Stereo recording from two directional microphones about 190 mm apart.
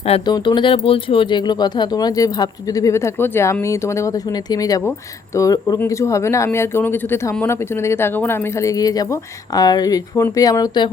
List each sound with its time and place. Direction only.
0.0 s speech: 30° left (ahead or behind)